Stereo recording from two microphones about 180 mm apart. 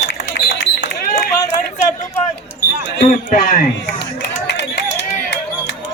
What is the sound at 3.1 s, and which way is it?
Speech, 45° left (ahead or behind).